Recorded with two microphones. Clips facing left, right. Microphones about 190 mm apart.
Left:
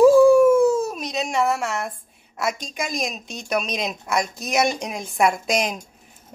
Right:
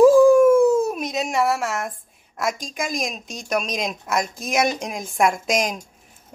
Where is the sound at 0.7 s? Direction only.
15° right (ahead or behind).